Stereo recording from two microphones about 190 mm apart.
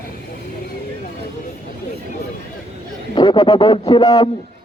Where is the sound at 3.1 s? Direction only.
25° left (ahead or behind).